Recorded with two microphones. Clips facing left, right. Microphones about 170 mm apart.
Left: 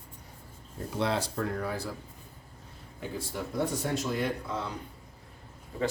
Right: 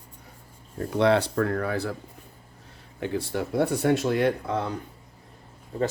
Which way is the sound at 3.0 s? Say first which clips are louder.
Right 8 dB; 70° right (ahead or behind).